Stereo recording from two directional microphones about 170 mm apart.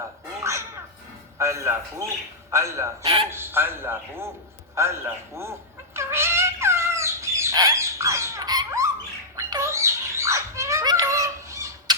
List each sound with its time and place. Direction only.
1.4 s a man's voice: 15° right (ahead or behind)
3.0 s a man's voice: 30° right (ahead or behind)
3.2 s a man's voice: 15° right (ahead or behind)
4.7 s cat: 15° right (ahead or behind)
9.3 s bird: 20° right (ahead or behind)